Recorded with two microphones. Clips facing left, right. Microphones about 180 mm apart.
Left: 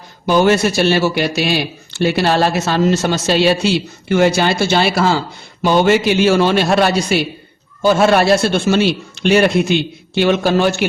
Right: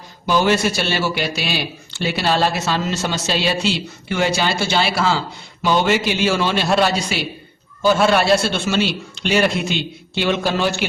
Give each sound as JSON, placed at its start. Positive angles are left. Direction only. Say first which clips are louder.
{"t": 0.3, "sound": "speech", "louder": "left 4 dB", "side_deg": 50}